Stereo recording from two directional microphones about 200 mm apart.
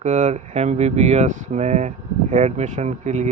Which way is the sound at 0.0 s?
35° right (ahead or behind).